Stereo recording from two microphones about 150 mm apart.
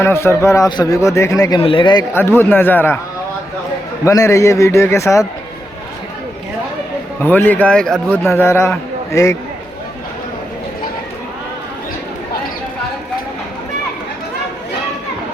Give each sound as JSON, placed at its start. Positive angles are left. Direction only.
{"t": 0.0, "sound": "a man's voice", "side_deg": 15}
{"t": 2.1, "sound": "a man's voice", "side_deg": 15}
{"t": 4.0, "sound": "a man's voice", "side_deg": 20}
{"t": 7.2, "sound": "a man's voice", "side_deg": 10}